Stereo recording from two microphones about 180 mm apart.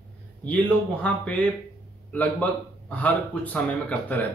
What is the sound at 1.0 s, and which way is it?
Speech, 5° left (ahead or behind).